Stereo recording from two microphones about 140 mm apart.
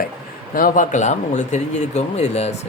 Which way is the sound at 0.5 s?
80° left.